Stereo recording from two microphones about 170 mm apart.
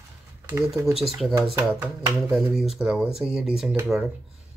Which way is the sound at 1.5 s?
10° right (ahead or behind).